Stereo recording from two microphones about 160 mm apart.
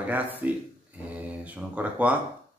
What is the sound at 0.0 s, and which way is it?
Speech, 10° right (ahead or behind).